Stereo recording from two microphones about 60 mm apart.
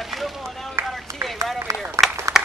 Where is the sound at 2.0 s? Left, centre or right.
Right.